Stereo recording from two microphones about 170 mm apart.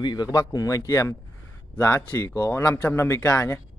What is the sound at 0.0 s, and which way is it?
Speech, 25° left (ahead or behind).